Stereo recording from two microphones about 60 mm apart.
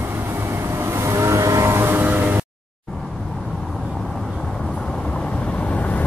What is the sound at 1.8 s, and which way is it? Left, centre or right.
Vehicle, right.